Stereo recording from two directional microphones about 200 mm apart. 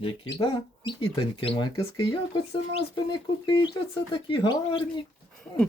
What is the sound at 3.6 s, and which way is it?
Speech, 25° left (ahead or behind).